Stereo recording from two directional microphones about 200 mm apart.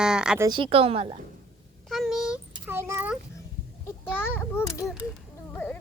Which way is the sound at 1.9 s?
Centre (ahead or behind).